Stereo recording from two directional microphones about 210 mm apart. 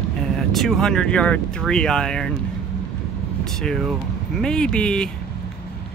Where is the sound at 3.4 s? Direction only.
5° left (ahead or behind).